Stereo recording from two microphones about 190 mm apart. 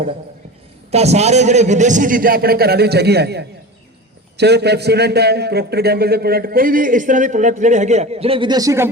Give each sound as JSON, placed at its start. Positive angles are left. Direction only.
{"t": 0.9, "sound": "a man's voice", "side_deg": -35}